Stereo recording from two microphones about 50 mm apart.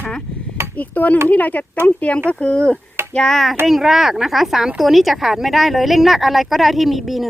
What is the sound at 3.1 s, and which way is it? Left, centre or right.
Speech, centre.